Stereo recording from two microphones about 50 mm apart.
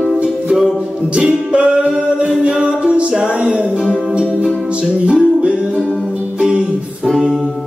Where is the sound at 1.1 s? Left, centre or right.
Right.